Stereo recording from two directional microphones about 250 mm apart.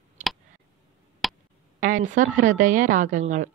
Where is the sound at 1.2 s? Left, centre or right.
Centre.